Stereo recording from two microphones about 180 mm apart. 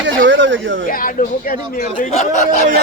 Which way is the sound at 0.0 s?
90° right.